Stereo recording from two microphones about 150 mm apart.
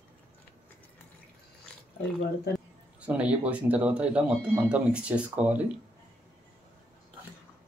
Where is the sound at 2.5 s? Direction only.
90° left.